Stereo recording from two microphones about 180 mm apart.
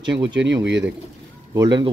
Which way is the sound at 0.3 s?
80° right.